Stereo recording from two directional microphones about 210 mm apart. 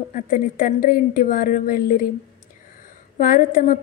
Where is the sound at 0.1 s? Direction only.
40° left (ahead or behind).